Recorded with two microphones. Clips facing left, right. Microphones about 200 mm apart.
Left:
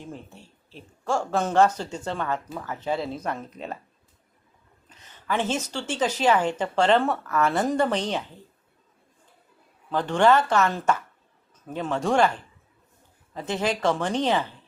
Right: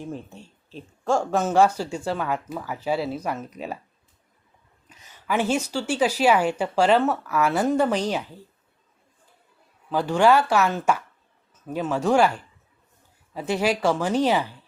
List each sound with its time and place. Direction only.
0.0 s a woman's voice: 15° right (ahead or behind)
4.9 s a woman's voice: 10° right (ahead or behind)
9.9 s a woman's voice: 10° right (ahead or behind)
13.3 s a woman's voice: 10° right (ahead or behind)